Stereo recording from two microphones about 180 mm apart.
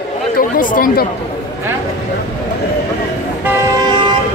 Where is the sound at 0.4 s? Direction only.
50° left (ahead or behind).